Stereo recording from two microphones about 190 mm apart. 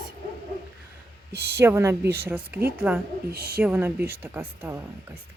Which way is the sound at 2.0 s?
55° right (ahead or behind).